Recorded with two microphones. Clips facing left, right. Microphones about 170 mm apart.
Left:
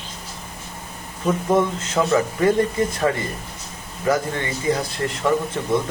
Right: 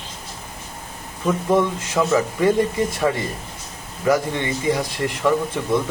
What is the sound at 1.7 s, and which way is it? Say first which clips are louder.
Speech: even; 10° right (ahead or behind).